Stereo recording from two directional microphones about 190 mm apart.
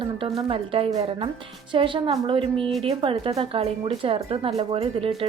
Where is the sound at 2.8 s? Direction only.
25° right (ahead or behind).